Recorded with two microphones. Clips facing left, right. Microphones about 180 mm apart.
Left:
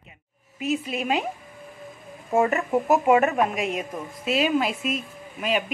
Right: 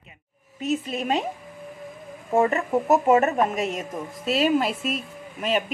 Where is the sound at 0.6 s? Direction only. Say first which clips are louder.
Even; centre (ahead or behind).